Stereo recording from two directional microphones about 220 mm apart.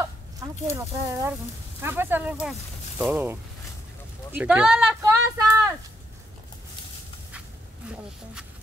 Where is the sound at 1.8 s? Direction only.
10° right (ahead or behind).